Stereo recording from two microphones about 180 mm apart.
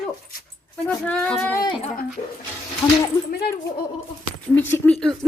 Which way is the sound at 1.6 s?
35° left (ahead or behind).